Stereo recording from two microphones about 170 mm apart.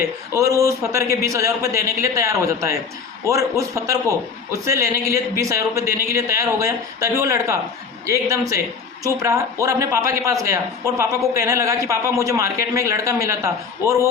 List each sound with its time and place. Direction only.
0.3 s speech: 20° right (ahead or behind)